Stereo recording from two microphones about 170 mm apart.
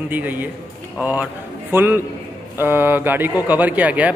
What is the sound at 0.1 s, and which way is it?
A man's voice, 10° right (ahead or behind).